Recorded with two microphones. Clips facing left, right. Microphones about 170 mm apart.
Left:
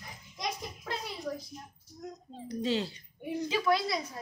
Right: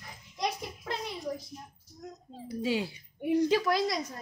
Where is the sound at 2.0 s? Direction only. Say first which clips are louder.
Left 1 dB; 5° right (ahead or behind).